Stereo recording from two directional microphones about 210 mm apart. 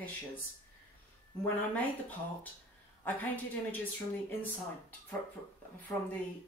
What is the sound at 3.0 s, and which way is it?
Speech, 10° left (ahead or behind).